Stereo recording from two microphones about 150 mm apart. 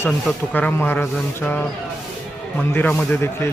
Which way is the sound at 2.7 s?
10° left (ahead or behind).